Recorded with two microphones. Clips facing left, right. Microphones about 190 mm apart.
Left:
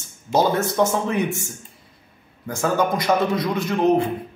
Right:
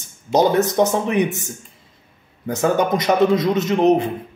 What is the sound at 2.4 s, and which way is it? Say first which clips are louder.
Speech: right 3 dB; 20° right (ahead or behind).